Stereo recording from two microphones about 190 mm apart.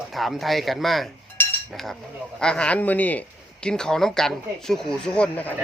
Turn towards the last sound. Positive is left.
turn(degrees=5)  # may be behind; listen again after turning